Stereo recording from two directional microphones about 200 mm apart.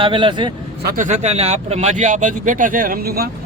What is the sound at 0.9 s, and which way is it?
Speech, 40° right (ahead or behind).